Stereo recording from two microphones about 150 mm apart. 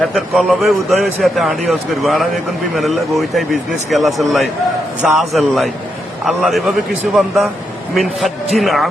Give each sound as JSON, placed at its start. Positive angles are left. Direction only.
{"t": 0.0, "sound": "speech", "side_deg": 0}
{"t": 8.5, "sound": "speech", "side_deg": 0}